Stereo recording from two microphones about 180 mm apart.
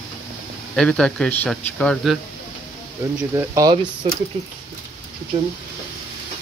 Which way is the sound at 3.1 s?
15° right (ahead or behind).